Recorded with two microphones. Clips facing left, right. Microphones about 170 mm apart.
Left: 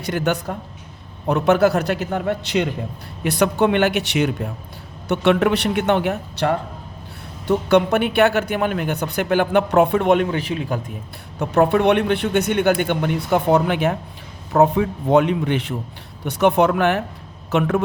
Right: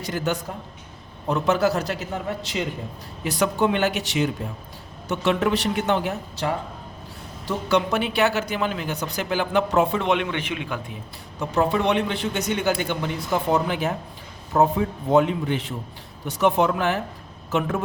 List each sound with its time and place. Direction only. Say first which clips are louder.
0.0 s speech: left 4 dB; 65° left (ahead or behind); by 10.9 s 40° left (ahead or behind)
11.3 s speech: left 5 dB; 60° left (ahead or behind)